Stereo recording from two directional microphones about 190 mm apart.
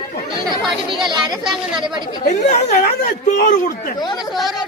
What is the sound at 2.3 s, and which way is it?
Speech, 40° left (ahead or behind).